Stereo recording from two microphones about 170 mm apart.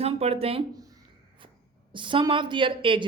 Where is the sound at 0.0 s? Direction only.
35° right (ahead or behind).